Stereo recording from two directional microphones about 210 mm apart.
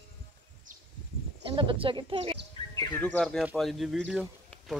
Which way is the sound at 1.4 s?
25° right (ahead or behind).